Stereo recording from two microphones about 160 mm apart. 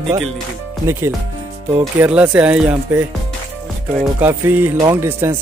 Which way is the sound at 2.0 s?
10° right (ahead or behind).